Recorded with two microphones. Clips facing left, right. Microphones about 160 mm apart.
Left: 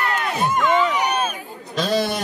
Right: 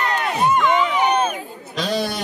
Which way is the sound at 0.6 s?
20° right (ahead or behind).